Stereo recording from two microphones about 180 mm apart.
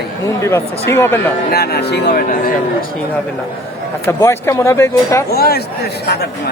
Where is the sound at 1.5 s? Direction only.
60° left (ahead or behind).